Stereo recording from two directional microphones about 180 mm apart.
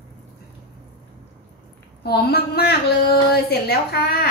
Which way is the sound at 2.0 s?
65° left (ahead or behind).